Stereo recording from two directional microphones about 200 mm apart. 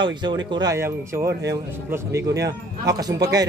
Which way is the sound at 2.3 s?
60° right (ahead or behind).